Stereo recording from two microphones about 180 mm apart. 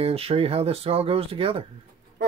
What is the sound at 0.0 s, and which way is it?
Speech, 35° right (ahead or behind).